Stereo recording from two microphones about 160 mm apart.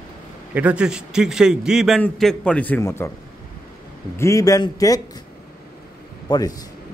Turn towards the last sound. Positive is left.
turn(degrees=25)  # may be behind; listen again after turning